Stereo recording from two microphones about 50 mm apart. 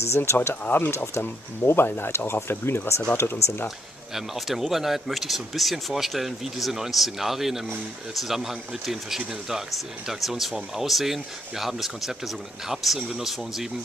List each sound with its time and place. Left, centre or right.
0.0 s speech: left
0.7 s speech: left
0.9 s speech: left
4.1 s speech: centre